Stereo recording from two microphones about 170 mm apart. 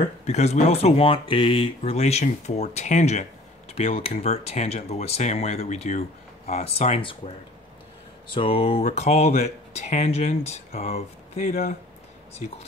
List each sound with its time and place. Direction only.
0.3 s speech: 40° left (ahead or behind)
8.4 s speech: 35° left (ahead or behind)